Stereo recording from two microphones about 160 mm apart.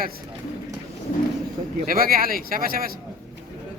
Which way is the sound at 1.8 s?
65° right (ahead or behind).